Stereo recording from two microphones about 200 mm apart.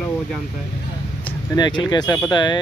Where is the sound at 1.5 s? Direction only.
20° left (ahead or behind).